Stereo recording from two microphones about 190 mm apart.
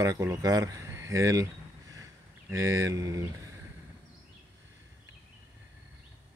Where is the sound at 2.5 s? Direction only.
15° right (ahead or behind).